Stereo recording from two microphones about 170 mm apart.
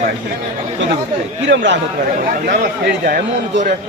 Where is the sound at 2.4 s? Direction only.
75° right (ahead or behind).